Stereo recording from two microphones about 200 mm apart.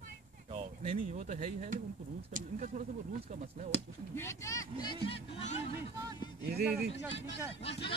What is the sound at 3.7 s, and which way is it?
Speech, 10° left (ahead or behind).